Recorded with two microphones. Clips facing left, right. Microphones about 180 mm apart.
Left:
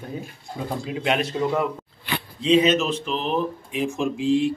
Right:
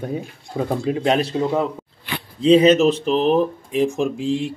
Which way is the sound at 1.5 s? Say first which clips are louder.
Right 3 dB; 20° right (ahead or behind).